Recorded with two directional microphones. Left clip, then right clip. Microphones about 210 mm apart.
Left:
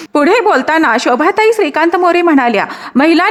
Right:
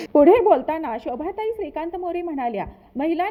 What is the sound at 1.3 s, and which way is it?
A woman's voice, 15° left (ahead or behind).